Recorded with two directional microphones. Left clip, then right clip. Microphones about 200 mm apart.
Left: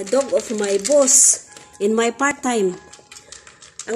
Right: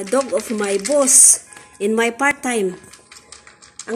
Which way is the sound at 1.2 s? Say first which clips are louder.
Right 2 dB; centre (ahead or behind).